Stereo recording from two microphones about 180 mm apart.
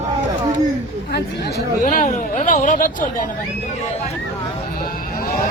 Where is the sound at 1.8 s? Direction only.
45° left (ahead or behind).